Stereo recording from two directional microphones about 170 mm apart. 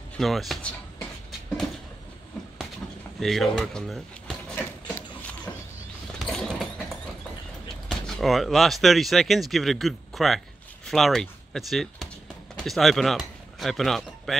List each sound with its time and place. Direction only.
0.2 s speech: centre (ahead or behind)
3.2 s speech: centre (ahead or behind)
4.6 s a sound: 10° left (ahead or behind)
7.9 s speech: centre (ahead or behind)